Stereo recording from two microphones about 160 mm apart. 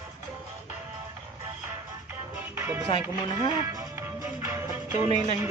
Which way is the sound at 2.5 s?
15° right (ahead or behind).